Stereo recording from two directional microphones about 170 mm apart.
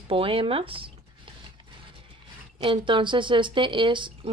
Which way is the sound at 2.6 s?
30° right (ahead or behind).